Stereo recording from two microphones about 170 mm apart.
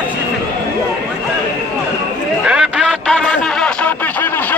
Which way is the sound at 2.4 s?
5° right (ahead or behind).